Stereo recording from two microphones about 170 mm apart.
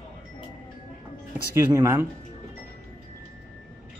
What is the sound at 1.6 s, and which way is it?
Speech, 15° right (ahead or behind).